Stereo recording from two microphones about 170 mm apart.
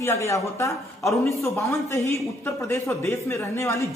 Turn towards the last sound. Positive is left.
turn(degrees=15)  # may be behind; listen again after turning